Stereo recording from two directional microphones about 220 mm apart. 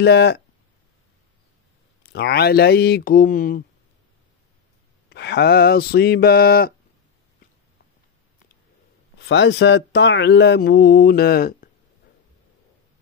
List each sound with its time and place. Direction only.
0.0 s speech: 50° left (ahead or behind)
2.0 s speech: 50° left (ahead or behind)
5.1 s speech: 50° left (ahead or behind)
9.2 s speech: 55° left (ahead or behind)